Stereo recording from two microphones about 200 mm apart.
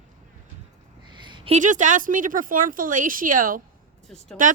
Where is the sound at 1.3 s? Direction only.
25° right (ahead or behind); by 3.6 s 45° right (ahead or behind).